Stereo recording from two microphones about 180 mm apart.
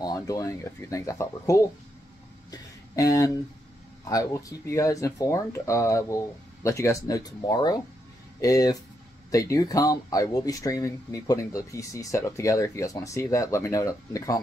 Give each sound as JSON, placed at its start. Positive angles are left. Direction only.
{"t": 0.0, "sound": "speech", "side_deg": 20}
{"t": 2.5, "sound": "a sound", "side_deg": 20}
{"t": 4.1, "sound": "speech", "side_deg": 20}